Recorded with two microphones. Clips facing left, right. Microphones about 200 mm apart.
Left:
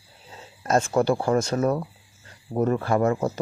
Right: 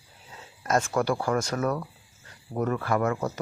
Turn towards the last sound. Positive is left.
turn(degrees=25)  # may be behind; listen again after turning